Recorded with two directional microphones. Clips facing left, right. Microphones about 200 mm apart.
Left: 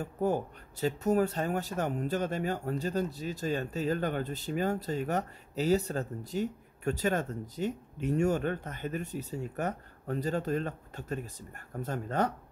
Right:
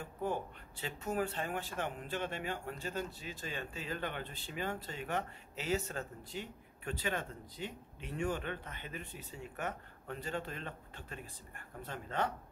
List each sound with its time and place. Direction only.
0.0 s speech: 40° left (ahead or behind)